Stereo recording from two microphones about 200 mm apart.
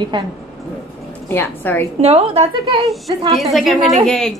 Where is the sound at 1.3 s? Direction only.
10° left (ahead or behind).